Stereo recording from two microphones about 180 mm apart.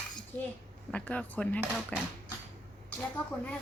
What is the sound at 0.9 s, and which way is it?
Speech, 10° left (ahead or behind).